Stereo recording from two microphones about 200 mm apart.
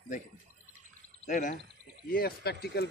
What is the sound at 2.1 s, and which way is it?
Speech, 50° left (ahead or behind).